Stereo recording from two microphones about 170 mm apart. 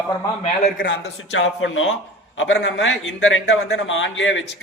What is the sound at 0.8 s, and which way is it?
A man's voice, 90° left.